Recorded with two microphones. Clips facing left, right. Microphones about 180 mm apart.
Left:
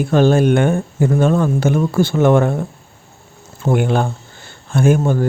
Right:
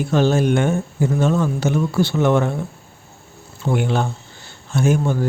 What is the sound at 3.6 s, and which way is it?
Speech, 50° left (ahead or behind).